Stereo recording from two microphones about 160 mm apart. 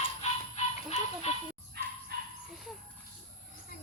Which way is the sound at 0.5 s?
45° left (ahead or behind).